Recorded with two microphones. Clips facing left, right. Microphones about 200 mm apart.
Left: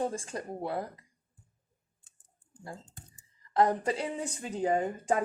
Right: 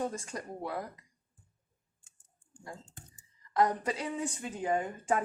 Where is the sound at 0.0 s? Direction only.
30° left (ahead or behind).